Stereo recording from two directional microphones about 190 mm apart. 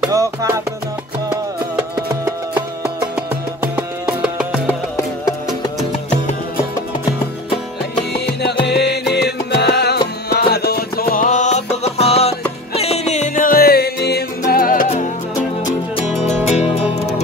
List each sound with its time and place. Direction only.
0.1 s music: 15° right (ahead or behind)
3.7 s music: 5° right (ahead or behind)
4.6 s music: 15° left (ahead or behind)
8.1 s music: 60° left (ahead or behind)
14.5 s music: 45° left (ahead or behind)
16.1 s music: 35° left (ahead or behind)